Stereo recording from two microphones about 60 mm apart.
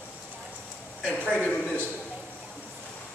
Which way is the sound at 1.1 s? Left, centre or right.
Centre.